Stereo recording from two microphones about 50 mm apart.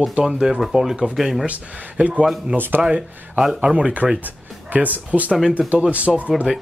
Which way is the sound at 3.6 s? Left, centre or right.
Centre.